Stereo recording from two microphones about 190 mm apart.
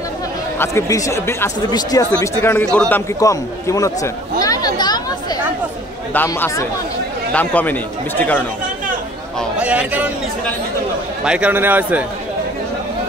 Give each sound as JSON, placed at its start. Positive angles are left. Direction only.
{"t": 0.6, "sound": "speech", "side_deg": 15}
{"t": 9.4, "sound": "a man's voice", "side_deg": -5}
{"t": 11.2, "sound": "a man's voice", "side_deg": -5}